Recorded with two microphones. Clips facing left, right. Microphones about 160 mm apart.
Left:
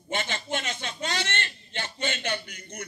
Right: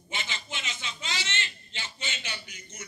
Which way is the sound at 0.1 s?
50° left (ahead or behind).